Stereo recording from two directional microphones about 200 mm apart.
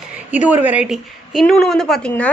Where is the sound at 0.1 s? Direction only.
5° right (ahead or behind).